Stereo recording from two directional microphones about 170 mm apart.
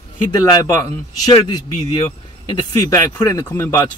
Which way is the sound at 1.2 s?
25° left (ahead or behind).